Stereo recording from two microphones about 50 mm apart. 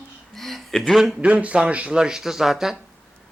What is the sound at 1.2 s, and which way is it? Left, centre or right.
A man's voice, right.